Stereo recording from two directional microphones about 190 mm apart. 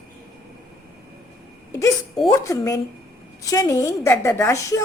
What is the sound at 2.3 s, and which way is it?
A woman's voice, 15° left (ahead or behind).